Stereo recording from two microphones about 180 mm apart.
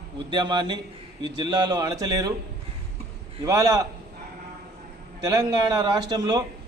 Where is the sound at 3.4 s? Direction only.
20° right (ahead or behind).